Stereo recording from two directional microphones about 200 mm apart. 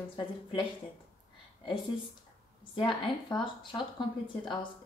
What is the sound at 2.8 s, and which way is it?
Speech, 25° left (ahead or behind).